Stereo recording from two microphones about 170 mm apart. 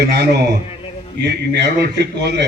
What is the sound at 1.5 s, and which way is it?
Speech, 80° right.